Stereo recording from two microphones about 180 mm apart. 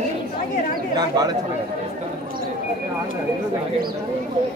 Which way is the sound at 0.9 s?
20° right (ahead or behind).